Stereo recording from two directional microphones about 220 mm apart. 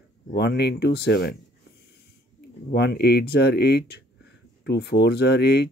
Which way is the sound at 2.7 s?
50° left (ahead or behind).